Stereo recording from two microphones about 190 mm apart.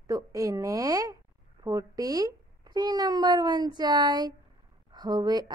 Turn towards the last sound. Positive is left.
turn(degrees=-20)  # may be behind; listen again after turning